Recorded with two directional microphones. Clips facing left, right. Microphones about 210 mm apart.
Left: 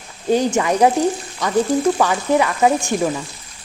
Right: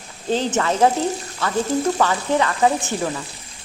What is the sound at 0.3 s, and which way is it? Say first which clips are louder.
Frying: left 4 dB; 15° left (ahead or behind).